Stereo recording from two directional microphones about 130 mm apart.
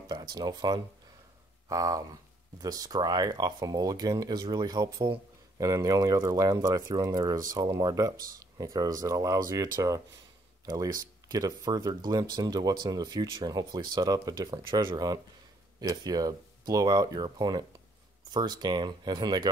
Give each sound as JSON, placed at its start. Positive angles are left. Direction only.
{"t": 0.1, "sound": "speech", "side_deg": -30}
{"t": 5.6, "sound": "speech", "side_deg": -25}